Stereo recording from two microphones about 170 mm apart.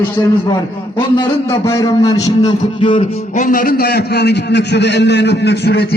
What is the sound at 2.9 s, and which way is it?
A man's voice, 50° left (ahead or behind).